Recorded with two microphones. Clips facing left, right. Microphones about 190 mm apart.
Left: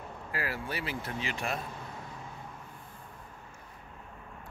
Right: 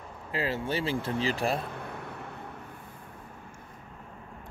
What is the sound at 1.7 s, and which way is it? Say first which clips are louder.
Vehicle: right 4 dB; 60° right (ahead or behind).